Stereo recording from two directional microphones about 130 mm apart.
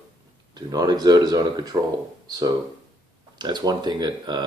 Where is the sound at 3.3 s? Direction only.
35° right (ahead or behind).